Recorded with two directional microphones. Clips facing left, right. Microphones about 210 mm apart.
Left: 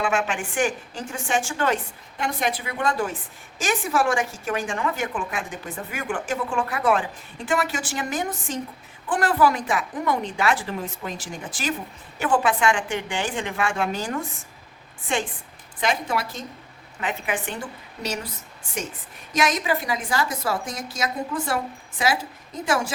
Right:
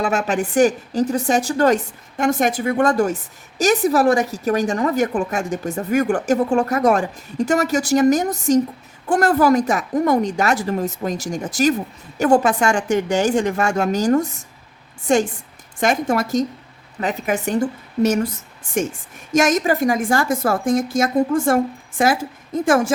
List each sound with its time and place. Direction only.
0.0 s a woman's voice: 40° right (ahead or behind)